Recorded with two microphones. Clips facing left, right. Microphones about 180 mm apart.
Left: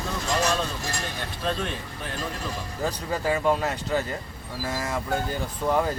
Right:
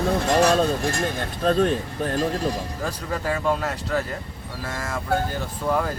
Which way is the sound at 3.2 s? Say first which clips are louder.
Left 1 dB; 5° left (ahead or behind).